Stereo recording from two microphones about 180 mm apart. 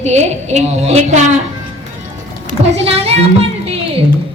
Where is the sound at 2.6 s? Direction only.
35° right (ahead or behind).